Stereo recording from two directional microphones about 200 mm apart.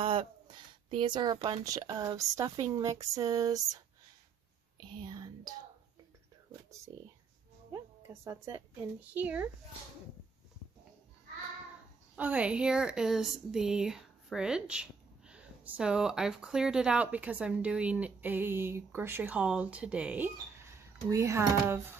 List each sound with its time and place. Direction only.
0.0 s speech: 25° right (ahead or behind)
4.8 s speech: 20° right (ahead or behind)
7.7 s a woman's voice: 15° right (ahead or behind)
12.2 s speech: 5° right (ahead or behind)